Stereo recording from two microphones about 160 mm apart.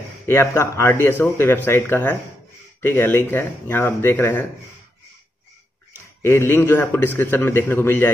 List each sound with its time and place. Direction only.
0.3 s speech: 15° left (ahead or behind)
6.2 s speech: 15° left (ahead or behind)